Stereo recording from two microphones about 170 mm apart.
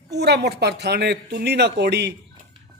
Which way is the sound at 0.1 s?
80° right.